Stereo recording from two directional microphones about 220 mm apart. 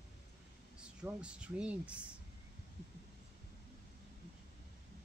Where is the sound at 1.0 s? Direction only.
5° right (ahead or behind).